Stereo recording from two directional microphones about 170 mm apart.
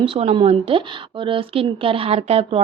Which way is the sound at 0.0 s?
35° right (ahead or behind).